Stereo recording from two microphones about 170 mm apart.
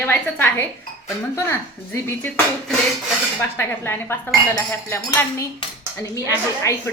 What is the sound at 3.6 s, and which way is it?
Speech, 15° left (ahead or behind).